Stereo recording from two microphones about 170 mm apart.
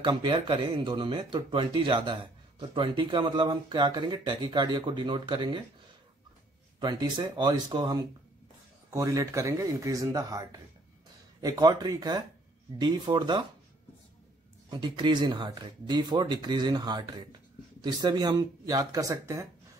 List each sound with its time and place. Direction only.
0.0 s speech: 25° right (ahead or behind)
6.8 s speech: 25° right (ahead or behind)
11.4 s speech: 20° right (ahead or behind)
14.7 s speech: 25° right (ahead or behind)